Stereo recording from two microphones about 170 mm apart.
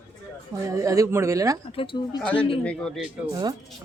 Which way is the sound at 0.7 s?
20° right (ahead or behind).